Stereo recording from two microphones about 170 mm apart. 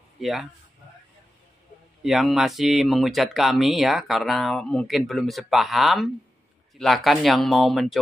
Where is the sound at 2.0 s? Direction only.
Centre (ahead or behind).